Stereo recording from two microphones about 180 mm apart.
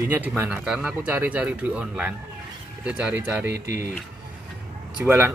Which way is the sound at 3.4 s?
70° right (ahead or behind).